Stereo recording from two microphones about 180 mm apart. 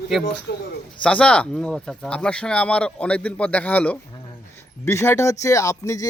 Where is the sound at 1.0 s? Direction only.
5° left (ahead or behind).